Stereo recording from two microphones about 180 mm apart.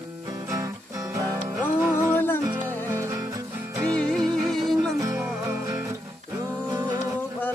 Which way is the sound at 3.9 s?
5° left (ahead or behind).